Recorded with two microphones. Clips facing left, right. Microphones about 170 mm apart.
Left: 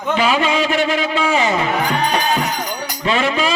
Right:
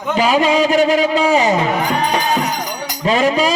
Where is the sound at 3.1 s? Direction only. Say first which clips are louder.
Right 4 dB; 40° right (ahead or behind).